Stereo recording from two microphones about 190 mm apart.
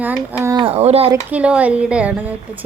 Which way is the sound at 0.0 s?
5° right (ahead or behind).